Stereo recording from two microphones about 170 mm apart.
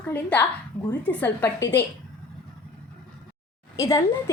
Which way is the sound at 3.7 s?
20° left (ahead or behind).